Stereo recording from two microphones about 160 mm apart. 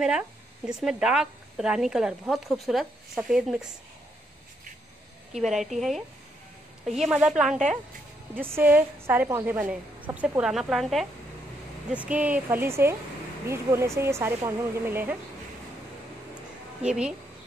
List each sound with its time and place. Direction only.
0.7 s a woman's voice: 5° right (ahead or behind)
5.3 s a woman's voice: centre (ahead or behind)
16.8 s a woman's voice: 5° right (ahead or behind)